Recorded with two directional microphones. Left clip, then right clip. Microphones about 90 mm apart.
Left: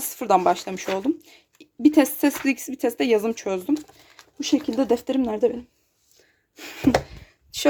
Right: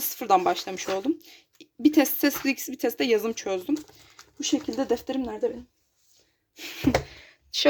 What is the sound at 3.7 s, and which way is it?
Speech, 60° left (ahead or behind).